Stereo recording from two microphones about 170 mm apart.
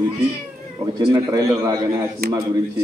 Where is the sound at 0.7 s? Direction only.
20° right (ahead or behind).